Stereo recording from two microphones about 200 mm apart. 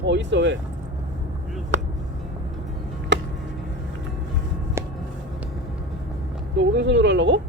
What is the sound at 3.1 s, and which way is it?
Music, 65° right (ahead or behind).